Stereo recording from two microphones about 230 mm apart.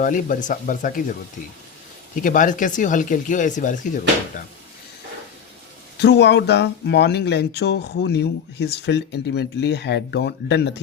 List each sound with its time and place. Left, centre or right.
0.0 s speech: left
2.1 s speech: left
6.0 s speech: left